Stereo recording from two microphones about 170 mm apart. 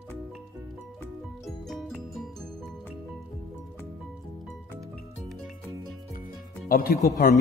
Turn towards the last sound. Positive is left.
turn(degrees=55)  # may be behind; listen again after turning